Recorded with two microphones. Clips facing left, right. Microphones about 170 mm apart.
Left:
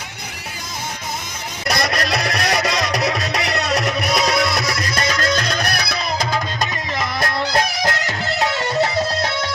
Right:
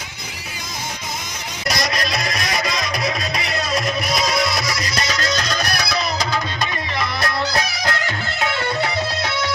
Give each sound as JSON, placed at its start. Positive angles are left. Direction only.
{"t": 1.7, "sound": "music", "side_deg": 60}